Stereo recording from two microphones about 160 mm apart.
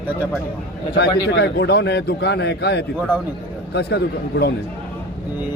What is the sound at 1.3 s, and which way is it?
A man's voice, 90° left.